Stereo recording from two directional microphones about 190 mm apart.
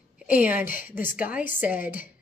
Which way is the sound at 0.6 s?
45° left (ahead or behind).